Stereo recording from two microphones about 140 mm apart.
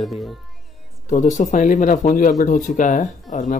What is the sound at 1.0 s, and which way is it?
Speech, 60° left (ahead or behind).